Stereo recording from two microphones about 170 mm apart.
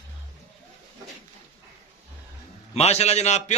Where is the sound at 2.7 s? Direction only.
40° left (ahead or behind).